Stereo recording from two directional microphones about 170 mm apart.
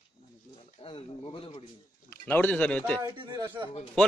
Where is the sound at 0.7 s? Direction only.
35° left (ahead or behind).